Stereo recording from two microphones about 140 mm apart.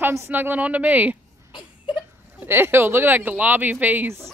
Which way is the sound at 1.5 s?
35° left (ahead or behind).